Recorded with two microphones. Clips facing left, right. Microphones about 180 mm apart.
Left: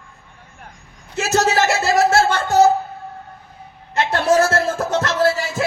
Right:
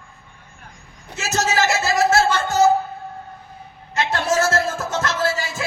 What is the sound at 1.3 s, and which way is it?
Music, 60° left (ahead or behind).